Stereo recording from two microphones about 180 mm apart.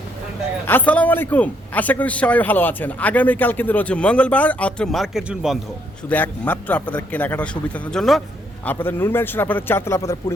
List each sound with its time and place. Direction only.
0.7 s a man's voice: 10° left (ahead or behind)
6.1 s a man's voice: 10° left (ahead or behind)